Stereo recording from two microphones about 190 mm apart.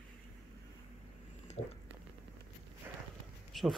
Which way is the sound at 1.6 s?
30° left (ahead or behind).